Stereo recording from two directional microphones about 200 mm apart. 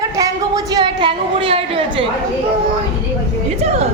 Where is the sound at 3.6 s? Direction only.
30° right (ahead or behind).